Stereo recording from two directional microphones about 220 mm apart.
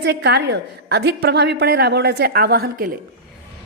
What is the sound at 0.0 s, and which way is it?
A woman's voice, 50° right (ahead or behind).